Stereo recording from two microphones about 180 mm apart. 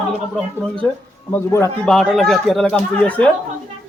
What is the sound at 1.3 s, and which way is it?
Speech, 15° left (ahead or behind).